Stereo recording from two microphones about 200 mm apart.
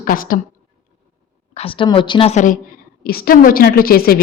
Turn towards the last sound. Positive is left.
turn(degrees=50)  # may be behind; listen again after turning